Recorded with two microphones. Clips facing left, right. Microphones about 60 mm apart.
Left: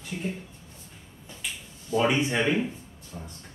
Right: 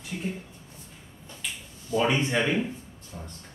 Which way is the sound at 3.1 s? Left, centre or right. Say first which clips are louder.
Left 1 dB; centre.